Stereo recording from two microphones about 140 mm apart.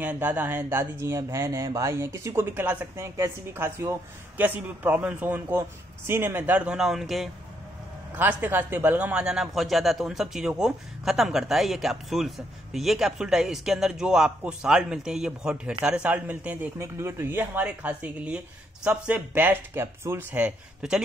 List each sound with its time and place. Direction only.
0.0 s speech: 10° right (ahead or behind)
8.1 s a man's voice: 10° right (ahead or behind)